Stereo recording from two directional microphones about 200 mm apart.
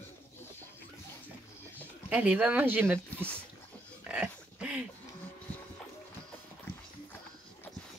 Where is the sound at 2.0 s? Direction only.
5° right (ahead or behind).